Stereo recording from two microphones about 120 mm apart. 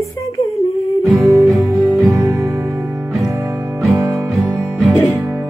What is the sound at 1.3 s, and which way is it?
Music, 25° right (ahead or behind).